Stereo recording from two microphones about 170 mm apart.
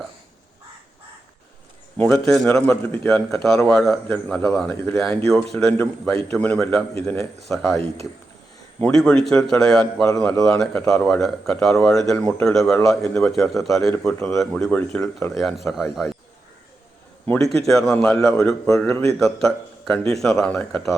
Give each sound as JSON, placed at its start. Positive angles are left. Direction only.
{"t": 2.2, "sound": "a man's voice", "side_deg": 0}
{"t": 17.2, "sound": "a man's voice", "side_deg": 10}